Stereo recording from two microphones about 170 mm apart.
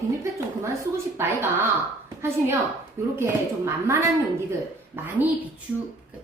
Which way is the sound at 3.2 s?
15° right (ahead or behind).